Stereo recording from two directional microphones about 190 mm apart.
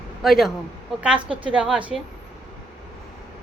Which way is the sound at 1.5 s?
5° right (ahead or behind).